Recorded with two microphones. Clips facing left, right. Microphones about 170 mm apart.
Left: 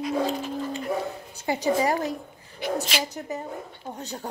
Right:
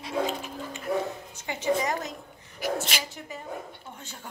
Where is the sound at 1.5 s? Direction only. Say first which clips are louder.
Left 4 dB; 35° left (ahead or behind).